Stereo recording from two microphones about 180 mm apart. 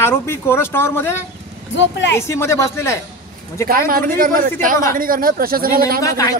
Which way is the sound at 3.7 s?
55° right (ahead or behind).